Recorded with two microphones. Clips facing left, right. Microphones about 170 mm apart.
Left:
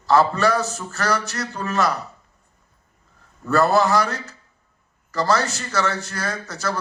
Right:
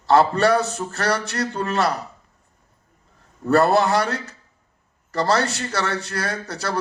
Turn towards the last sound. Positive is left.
turn(degrees=-35)  # may be behind; listen again after turning